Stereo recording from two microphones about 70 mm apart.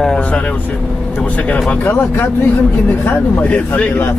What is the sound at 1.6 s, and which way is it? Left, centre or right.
Speech, left.